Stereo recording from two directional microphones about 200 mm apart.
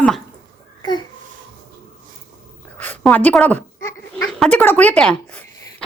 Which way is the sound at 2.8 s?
10° left (ahead or behind).